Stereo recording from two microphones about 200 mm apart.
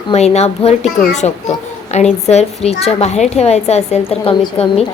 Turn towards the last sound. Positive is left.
turn(degrees=30)  # may be behind; listen again after turning